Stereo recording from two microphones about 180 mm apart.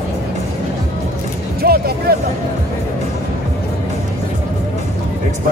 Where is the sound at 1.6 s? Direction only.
60° right (ahead or behind).